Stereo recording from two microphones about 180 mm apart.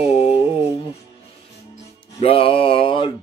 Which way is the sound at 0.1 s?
35° left (ahead or behind).